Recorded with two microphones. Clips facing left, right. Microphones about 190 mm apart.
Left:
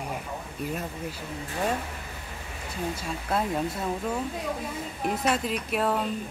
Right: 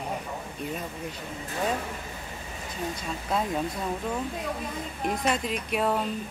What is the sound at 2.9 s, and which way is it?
Speech, 5° left (ahead or behind).